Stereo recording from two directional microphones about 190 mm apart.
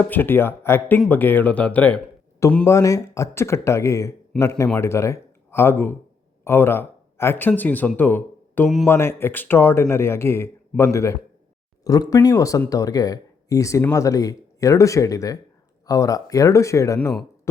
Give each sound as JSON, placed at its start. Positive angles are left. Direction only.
{"t": 0.0, "sound": "speech", "side_deg": 10}